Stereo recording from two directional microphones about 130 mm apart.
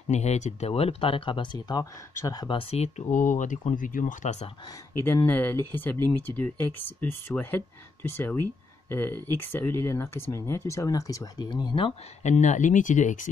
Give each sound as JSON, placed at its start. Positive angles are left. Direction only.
{"t": 0.1, "sound": "speech", "side_deg": 60}
{"t": 2.4, "sound": "speech", "side_deg": 45}
{"t": 3.1, "sound": "speech", "side_deg": 90}
{"t": 5.0, "sound": "speech", "side_deg": 15}
{"t": 12.2, "sound": "speech", "side_deg": 65}